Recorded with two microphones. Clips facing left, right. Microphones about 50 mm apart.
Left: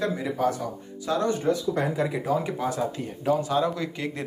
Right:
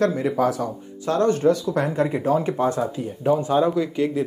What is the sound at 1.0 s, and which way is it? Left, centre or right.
Speech, right.